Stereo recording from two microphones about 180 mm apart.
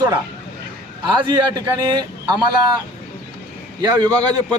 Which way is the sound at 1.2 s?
20° right (ahead or behind).